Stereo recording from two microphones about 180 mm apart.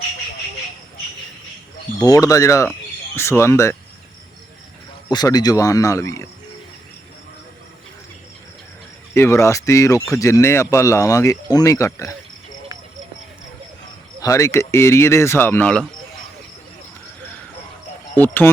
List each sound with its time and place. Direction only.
2.0 s speech: 20° left (ahead or behind)
5.0 s speech: 25° left (ahead or behind)
9.1 s speech: 15° left (ahead or behind)
14.2 s speech: 15° left (ahead or behind)
18.2 s speech: 10° left (ahead or behind)